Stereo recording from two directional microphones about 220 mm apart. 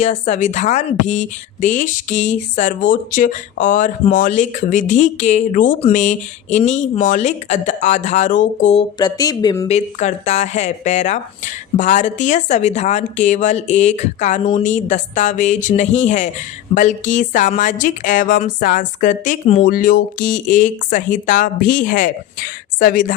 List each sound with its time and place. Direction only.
0.0 s speech: 30° left (ahead or behind)
9.6 s speech: 30° left (ahead or behind)